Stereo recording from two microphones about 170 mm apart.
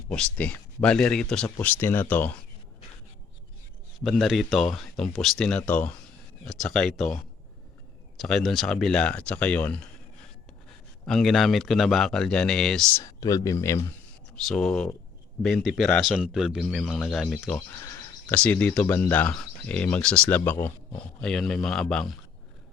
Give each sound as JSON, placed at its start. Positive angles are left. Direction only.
{"t": 0.1, "sound": "speech", "side_deg": 5}
{"t": 1.5, "sound": "speech", "side_deg": 15}
{"t": 4.0, "sound": "speech", "side_deg": 0}
{"t": 11.0, "sound": "speech", "side_deg": 5}
{"t": 13.0, "sound": "speech", "side_deg": 20}
{"t": 14.3, "sound": "speech", "side_deg": 5}
{"t": 17.7, "sound": "speech", "side_deg": 15}